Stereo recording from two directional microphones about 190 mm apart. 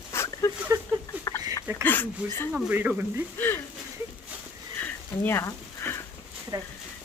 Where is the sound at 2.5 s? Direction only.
10° right (ahead or behind).